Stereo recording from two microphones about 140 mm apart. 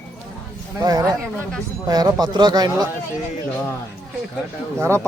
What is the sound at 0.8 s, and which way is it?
Speech, 30° right (ahead or behind).